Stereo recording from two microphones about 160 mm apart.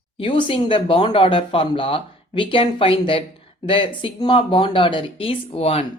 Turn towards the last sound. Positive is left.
turn(degrees=40)  # may be behind; listen again after turning